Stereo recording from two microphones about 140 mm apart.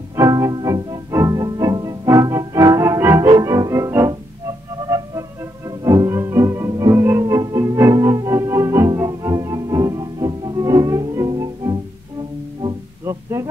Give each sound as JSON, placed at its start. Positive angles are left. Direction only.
{"t": 0.1, "sound": "music", "side_deg": -20}
{"t": 13.0, "sound": "music", "side_deg": -20}